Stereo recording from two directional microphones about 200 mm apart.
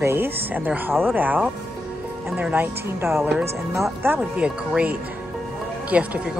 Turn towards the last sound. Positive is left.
turn(degrees=-5)  # may be behind; listen again after turning